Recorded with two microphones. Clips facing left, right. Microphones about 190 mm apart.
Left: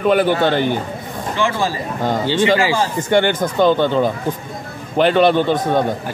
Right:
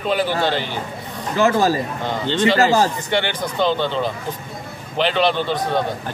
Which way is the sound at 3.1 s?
45° left (ahead or behind).